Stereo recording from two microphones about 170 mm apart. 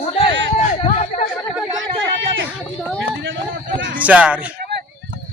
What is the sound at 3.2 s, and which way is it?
Speech, 90° right.